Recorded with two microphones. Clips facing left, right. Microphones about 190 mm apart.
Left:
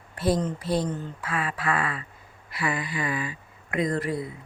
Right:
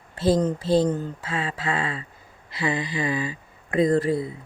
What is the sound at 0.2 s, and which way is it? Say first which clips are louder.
Speech: right 4 dB; 25° right (ahead or behind).